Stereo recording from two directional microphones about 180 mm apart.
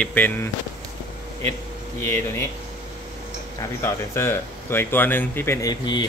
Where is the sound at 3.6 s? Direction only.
15° left (ahead or behind).